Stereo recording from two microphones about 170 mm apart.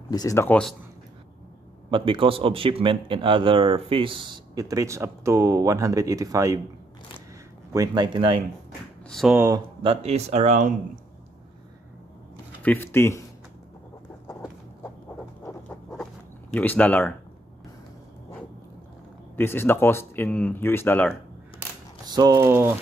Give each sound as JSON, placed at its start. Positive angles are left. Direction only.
{"t": 0.1, "sound": "speech", "side_deg": 20}
{"t": 1.9, "sound": "a man's voice", "side_deg": -30}
{"t": 7.7, "sound": "a man's voice", "side_deg": -25}
{"t": 9.1, "sound": "speech", "side_deg": 0}
{"t": 9.8, "sound": "speech", "side_deg": -40}
{"t": 12.6, "sound": "speech", "side_deg": 10}
{"t": 14.2, "sound": "bird", "side_deg": 20}
{"t": 16.5, "sound": "speech", "side_deg": 10}
{"t": 19.3, "sound": "speech", "side_deg": 15}
{"t": 22.0, "sound": "a man's voice", "side_deg": -25}